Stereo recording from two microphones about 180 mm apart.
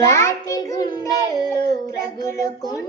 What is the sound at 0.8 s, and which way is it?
Child singing, 25° left (ahead or behind).